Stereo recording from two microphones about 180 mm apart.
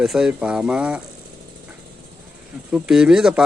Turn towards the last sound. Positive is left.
turn(degrees=-5)  # may be behind; listen again after turning